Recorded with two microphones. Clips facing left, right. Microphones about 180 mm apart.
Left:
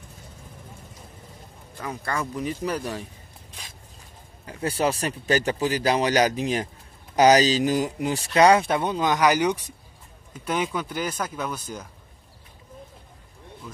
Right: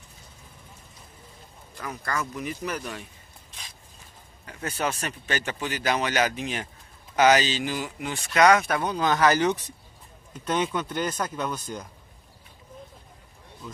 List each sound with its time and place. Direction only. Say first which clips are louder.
1.8 s speech: left 2 dB; 25° left (ahead or behind)
4.5 s speech: left 5 dB; 30° left (ahead or behind); by 11.8 s 5° left (ahead or behind)